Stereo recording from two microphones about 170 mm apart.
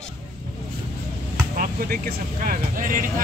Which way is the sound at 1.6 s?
55° right (ahead or behind).